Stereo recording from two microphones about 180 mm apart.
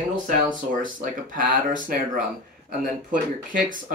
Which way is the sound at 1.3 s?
50° right (ahead or behind).